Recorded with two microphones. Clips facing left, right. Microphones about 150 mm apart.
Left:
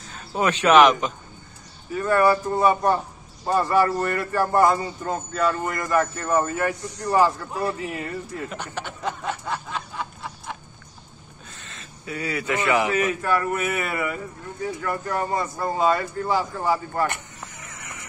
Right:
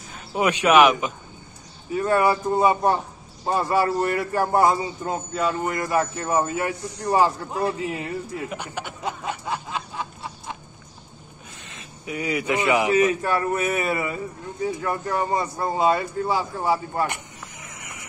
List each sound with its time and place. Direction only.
0.3 s a man's voice: 10° right (ahead or behind)
8.4 s snicker: 10° right (ahead or behind)
11.5 s a man's voice: 15° right (ahead or behind)